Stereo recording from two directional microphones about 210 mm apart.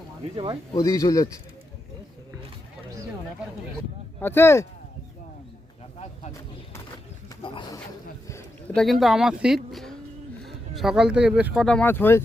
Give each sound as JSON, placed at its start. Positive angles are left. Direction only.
{"t": 0.7, "sound": "speech", "side_deg": 15}
{"t": 4.2, "sound": "speech", "side_deg": 10}
{"t": 7.4, "sound": "speech", "side_deg": 25}
{"t": 8.3, "sound": "speech", "side_deg": 5}